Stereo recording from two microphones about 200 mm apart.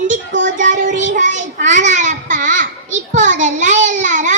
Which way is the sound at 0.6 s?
40° right (ahead or behind).